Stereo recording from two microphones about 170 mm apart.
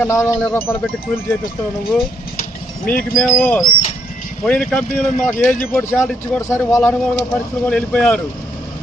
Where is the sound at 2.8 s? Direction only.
55° left (ahead or behind).